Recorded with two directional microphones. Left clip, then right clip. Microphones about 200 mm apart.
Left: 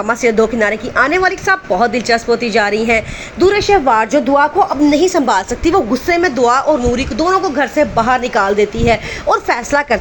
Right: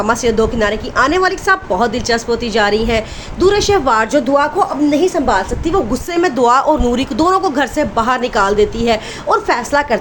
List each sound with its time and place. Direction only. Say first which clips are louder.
0.0 s a woman's voice: left 1 dB; 5° left (ahead or behind)
5.9 s a woman's voice: left 2 dB; centre (ahead or behind)
6.3 s speech: even; 15° right (ahead or behind)
7.8 s a woman's voice: left 5 dB; centre (ahead or behind)